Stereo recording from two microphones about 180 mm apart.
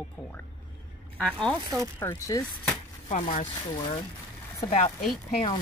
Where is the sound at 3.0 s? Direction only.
40° left (ahead or behind).